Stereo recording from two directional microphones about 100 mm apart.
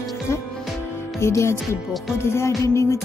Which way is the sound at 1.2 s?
25° left (ahead or behind).